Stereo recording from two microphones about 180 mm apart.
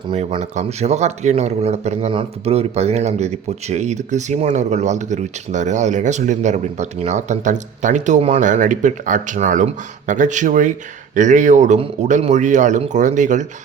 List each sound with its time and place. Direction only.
0.1 s speech: 35° right (ahead or behind)